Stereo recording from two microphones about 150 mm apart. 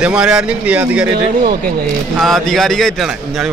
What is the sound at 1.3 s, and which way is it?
Speech, 80° right.